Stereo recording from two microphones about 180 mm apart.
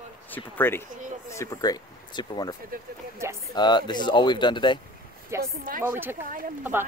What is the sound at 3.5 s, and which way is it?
Speech, 25° left (ahead or behind).